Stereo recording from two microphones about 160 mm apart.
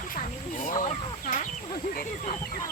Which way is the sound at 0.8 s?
50° left (ahead or behind).